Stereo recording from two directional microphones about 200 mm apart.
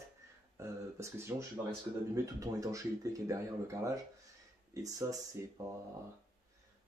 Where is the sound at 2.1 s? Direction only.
15° right (ahead or behind).